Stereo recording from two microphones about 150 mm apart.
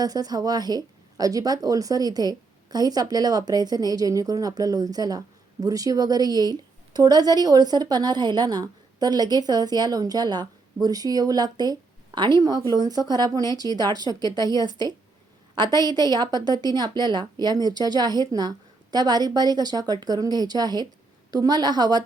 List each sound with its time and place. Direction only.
0.0 s speech: 25° right (ahead or behind)